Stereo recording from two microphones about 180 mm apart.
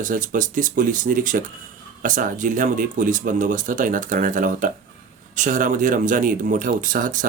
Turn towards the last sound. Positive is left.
turn(degrees=-50)  # may be behind; listen again after turning